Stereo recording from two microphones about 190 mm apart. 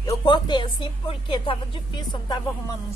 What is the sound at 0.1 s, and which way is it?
Speech, 25° left (ahead or behind).